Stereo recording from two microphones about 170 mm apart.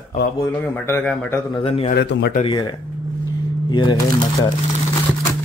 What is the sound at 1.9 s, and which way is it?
Speech, 80° left.